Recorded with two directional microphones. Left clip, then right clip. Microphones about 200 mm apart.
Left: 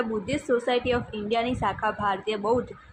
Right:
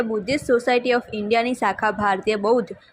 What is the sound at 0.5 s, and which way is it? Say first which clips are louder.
A woman's voice: right 5 dB; 30° right (ahead or behind).